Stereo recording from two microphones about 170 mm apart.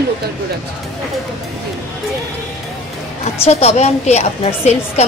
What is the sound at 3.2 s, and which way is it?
A woman's voice, 40° left (ahead or behind).